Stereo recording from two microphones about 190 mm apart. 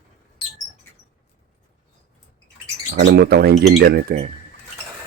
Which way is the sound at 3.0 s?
65° right (ahead or behind).